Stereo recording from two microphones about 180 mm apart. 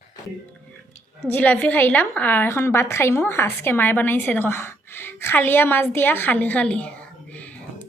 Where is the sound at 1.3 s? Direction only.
10° left (ahead or behind).